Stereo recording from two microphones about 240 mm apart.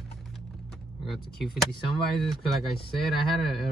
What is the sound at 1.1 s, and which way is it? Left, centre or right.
Speech, centre.